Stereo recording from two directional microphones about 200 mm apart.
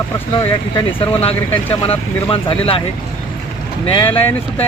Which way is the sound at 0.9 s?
30° left (ahead or behind).